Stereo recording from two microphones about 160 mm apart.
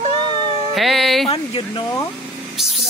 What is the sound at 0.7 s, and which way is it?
Speech, centre (ahead or behind).